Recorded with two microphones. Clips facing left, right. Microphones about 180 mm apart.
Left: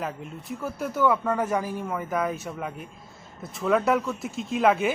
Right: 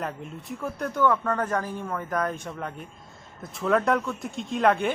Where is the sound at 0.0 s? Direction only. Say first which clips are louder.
Even; centre (ahead or behind).